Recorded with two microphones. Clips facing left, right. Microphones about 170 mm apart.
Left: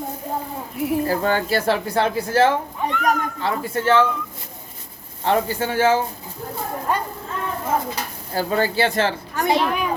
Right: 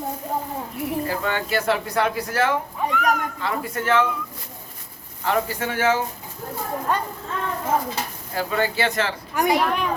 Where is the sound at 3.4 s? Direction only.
30° left (ahead or behind).